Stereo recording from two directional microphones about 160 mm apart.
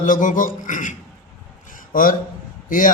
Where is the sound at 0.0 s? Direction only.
55° left (ahead or behind).